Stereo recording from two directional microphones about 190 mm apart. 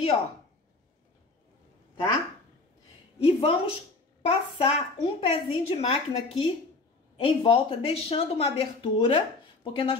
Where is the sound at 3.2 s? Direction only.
30° left (ahead or behind).